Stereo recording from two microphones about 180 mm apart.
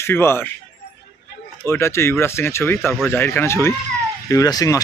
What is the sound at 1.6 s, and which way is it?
Speech, 15° left (ahead or behind).